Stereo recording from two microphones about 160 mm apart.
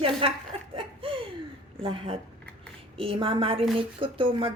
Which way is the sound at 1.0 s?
35° right (ahead or behind).